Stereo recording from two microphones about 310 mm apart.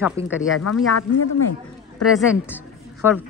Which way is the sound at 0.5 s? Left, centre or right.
Left.